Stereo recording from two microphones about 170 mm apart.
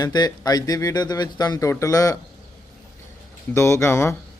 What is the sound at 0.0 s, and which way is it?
Speech, 25° left (ahead or behind).